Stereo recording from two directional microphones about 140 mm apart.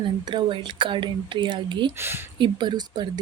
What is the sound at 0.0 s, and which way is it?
Speech, 35° right (ahead or behind).